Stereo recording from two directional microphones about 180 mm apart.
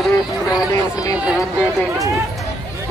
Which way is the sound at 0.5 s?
20° left (ahead or behind).